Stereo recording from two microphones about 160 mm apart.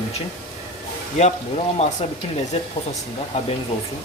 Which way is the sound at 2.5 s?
40° left (ahead or behind).